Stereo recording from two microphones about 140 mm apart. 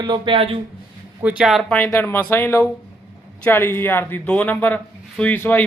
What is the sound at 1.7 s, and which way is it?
A man's voice, 10° left (ahead or behind).